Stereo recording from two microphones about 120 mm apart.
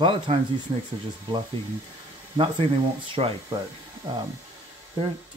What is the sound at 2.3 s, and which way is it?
Speech, 45° right (ahead or behind).